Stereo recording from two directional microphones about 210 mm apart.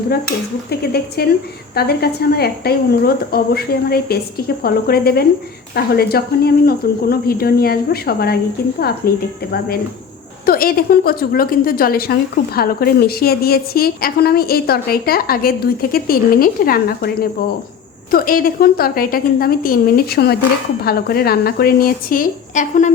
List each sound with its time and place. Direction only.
0.7 s a woman's voice: 50° left (ahead or behind)
10.4 s a woman's voice: 45° left (ahead or behind)